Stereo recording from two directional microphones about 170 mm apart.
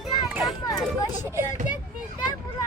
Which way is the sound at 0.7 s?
20° left (ahead or behind).